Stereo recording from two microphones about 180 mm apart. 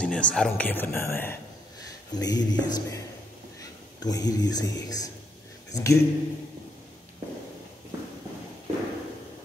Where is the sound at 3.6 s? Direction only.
20° left (ahead or behind).